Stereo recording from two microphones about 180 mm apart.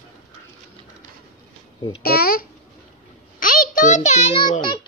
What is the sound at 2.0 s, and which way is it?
Speech, 55° left (ahead or behind).